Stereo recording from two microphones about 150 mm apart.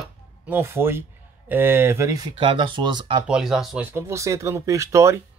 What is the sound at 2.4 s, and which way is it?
Speech, 35° right (ahead or behind).